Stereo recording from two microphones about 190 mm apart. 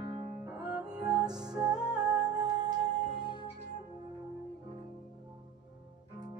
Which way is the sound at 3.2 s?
25° left (ahead or behind).